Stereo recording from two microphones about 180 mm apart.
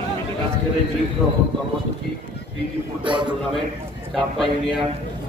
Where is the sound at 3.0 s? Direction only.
25° right (ahead or behind).